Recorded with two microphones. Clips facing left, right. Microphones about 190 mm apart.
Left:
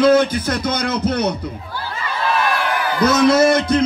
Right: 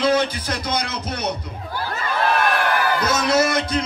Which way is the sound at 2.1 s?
55° right (ahead or behind).